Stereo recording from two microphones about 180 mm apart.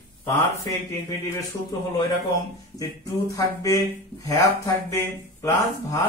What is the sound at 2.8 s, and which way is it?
Speech, 20° left (ahead or behind).